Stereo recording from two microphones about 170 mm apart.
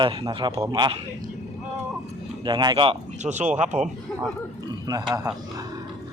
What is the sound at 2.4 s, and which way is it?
Speech, 25° right (ahead or behind).